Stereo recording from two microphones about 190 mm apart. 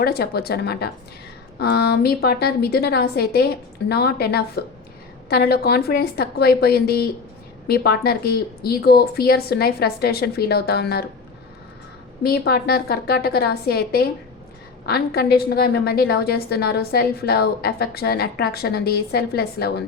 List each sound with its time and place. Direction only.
0.0 s a woman's voice: 55° left (ahead or behind)
12.2 s a woman's voice: 55° left (ahead or behind)